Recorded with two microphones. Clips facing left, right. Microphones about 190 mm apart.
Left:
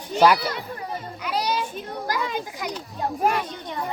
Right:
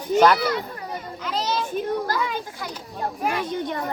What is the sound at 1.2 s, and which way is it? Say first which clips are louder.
Children playing: even; 10° left (ahead or behind).